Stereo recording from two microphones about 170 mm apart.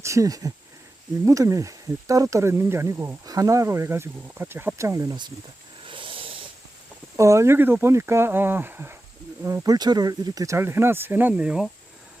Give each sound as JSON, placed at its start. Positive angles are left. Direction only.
{"t": 0.0, "sound": "speech", "side_deg": -20}
{"t": 5.8, "sound": "a sound", "side_deg": -30}
{"t": 7.2, "sound": "speech", "side_deg": -15}